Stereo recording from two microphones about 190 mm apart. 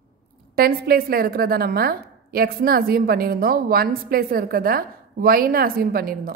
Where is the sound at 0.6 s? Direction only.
55° right (ahead or behind).